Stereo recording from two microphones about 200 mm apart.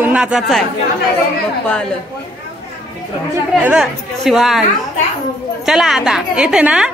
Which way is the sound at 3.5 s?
5° right (ahead or behind).